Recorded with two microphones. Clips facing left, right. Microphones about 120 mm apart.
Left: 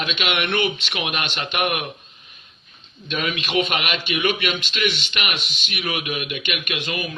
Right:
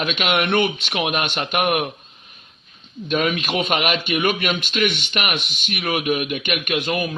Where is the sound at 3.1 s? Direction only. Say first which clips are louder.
Right 4 dB; 45° right (ahead or behind).